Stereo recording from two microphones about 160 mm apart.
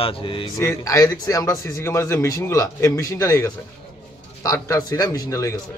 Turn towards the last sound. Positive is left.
turn(degrees=20)  # may be behind; listen again after turning